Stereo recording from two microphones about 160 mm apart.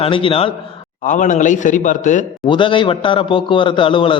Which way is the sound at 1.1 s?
55° left (ahead or behind).